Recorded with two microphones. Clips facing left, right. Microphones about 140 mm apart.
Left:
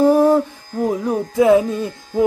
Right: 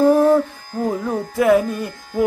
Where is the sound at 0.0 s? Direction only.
15° left (ahead or behind).